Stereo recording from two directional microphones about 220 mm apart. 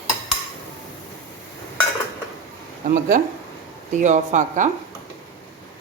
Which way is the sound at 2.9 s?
40° right (ahead or behind).